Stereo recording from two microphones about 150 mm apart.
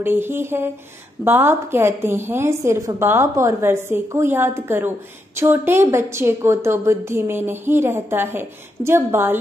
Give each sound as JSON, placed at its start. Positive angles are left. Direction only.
{"t": 0.0, "sound": "a woman's voice", "side_deg": -15}